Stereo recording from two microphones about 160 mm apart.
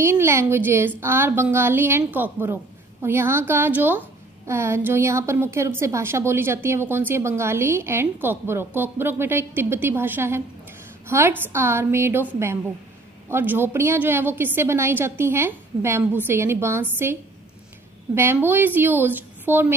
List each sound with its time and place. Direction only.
0.0 s a woman's voice: 15° right (ahead or behind)